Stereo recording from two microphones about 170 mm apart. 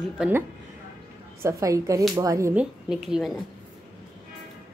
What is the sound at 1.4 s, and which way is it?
A woman's voice, 20° right (ahead or behind).